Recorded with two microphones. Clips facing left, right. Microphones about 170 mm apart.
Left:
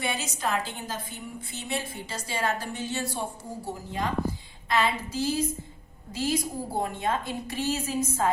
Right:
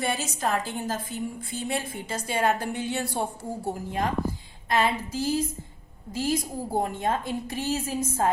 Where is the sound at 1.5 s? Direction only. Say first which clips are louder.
Right 2 dB; 50° right (ahead or behind).